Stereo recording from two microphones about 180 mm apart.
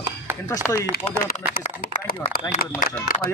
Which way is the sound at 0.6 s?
5° left (ahead or behind).